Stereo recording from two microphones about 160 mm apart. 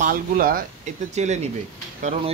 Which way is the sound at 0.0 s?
65° right (ahead or behind).